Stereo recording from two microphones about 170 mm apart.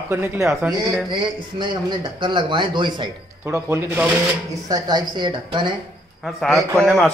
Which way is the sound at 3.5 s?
15° right (ahead or behind).